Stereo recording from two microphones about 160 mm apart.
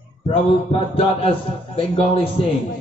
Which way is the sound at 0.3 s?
35° left (ahead or behind).